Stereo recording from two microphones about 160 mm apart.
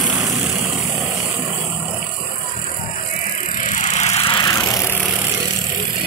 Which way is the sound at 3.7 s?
50° left (ahead or behind).